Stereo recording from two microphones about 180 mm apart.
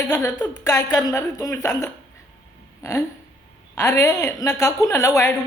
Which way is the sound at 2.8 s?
20° left (ahead or behind).